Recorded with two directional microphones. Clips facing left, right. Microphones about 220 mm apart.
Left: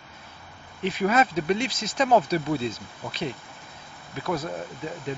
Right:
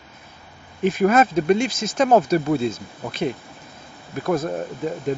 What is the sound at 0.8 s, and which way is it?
Speech, 50° right (ahead or behind).